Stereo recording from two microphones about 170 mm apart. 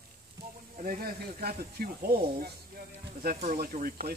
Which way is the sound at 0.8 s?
55° right (ahead or behind).